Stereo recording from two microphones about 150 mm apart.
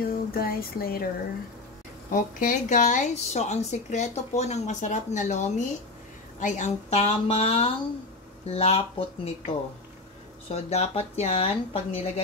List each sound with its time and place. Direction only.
0.0 s speech: 80° left
2.1 s speech: 60° left (ahead or behind); by 9.3 s 40° left (ahead or behind)
10.5 s speech: 45° left (ahead or behind)